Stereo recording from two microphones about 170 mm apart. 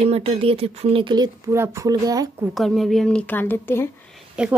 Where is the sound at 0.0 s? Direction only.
35° right (ahead or behind).